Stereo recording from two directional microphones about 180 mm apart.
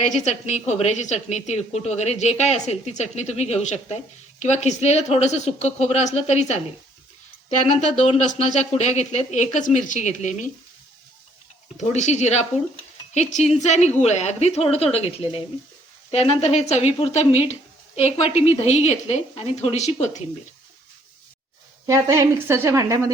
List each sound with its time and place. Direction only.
0.0 s speech: 40° left (ahead or behind)
7.7 s speech: 40° left (ahead or behind)
11.8 s speech: 40° left (ahead or behind)
21.8 s a woman's voice: 20° right (ahead or behind)